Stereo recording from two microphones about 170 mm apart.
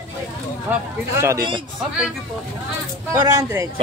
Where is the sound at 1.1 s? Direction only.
15° right (ahead or behind).